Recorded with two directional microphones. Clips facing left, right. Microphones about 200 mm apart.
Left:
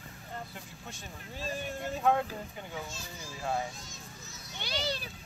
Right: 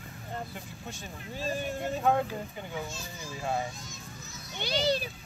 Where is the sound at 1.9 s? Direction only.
Centre (ahead or behind).